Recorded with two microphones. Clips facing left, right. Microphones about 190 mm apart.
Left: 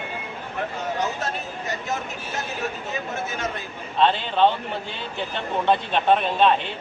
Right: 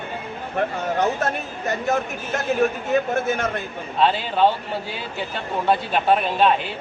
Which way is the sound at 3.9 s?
5° right (ahead or behind).